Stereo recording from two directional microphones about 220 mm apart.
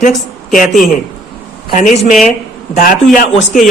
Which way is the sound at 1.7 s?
35° left (ahead or behind).